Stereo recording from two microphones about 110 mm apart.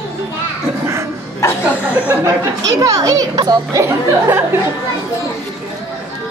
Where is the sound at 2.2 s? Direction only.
30° right (ahead or behind).